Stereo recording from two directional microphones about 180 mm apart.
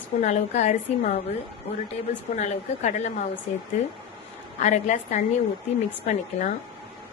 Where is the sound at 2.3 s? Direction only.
40° left (ahead or behind).